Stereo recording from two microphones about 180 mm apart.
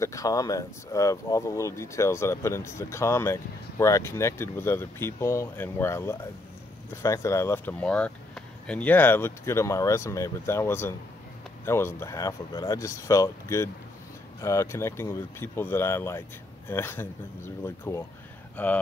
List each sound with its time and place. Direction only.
0.0 s speech: 20° left (ahead or behind)